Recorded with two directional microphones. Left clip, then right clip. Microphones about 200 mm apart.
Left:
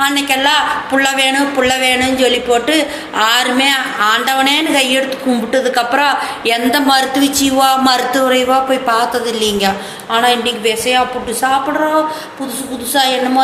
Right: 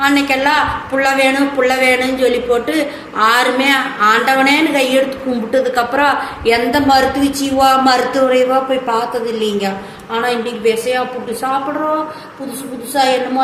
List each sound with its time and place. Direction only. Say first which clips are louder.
0.0 s a woman's voice: even; 5° right (ahead or behind)
12.9 s a woman's voice: even; centre (ahead or behind)